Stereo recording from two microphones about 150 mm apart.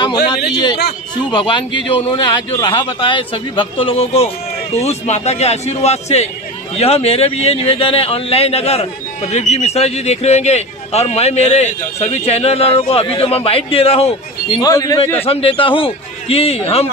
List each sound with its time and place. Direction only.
1.3 s a man's voice: 35° left (ahead or behind)
14.6 s a man's voice: 25° left (ahead or behind)
15.1 s a man's voice: 40° left (ahead or behind)